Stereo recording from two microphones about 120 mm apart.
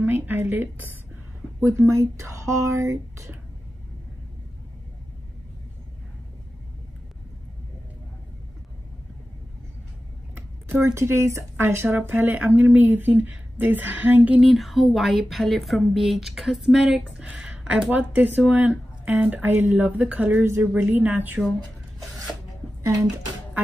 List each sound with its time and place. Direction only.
0.0 s a woman's voice: 15° right (ahead or behind)
10.3 s a sound: 15° right (ahead or behind)
10.9 s speech: 20° right (ahead or behind)
14.4 s speech: centre (ahead or behind)